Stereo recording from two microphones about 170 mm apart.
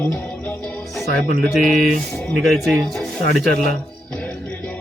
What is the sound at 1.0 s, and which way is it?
Speech, 65° right (ahead or behind).